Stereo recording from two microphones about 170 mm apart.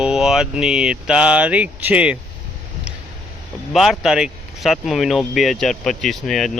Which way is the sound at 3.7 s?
Centre (ahead or behind).